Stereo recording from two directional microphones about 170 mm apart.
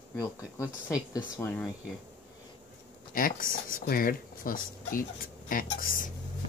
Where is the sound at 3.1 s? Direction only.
55° left (ahead or behind).